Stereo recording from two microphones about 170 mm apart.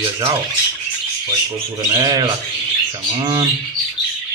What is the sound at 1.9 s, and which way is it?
Speech, 25° right (ahead or behind).